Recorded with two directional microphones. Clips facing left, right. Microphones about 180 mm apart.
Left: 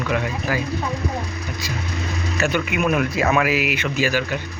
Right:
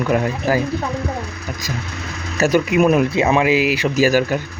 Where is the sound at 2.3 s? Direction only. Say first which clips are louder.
Right 7 dB; 40° right (ahead or behind).